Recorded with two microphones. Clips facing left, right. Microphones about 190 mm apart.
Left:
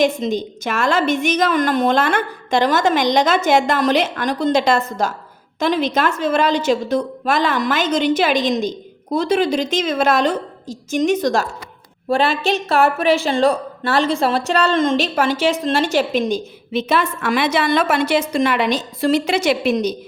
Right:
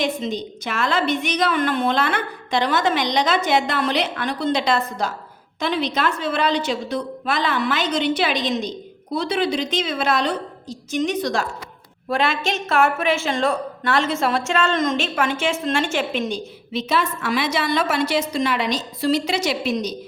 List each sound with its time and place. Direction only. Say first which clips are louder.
0.0 s a woman's voice: left 6 dB; 45° left (ahead or behind)
12.0 s a woman's voice: left 4 dB; 30° left (ahead or behind)
16.7 s a woman's voice: left 4 dB; 55° left (ahead or behind)